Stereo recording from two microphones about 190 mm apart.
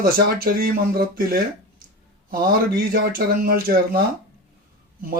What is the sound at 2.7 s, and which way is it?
Speech, 55° right (ahead or behind).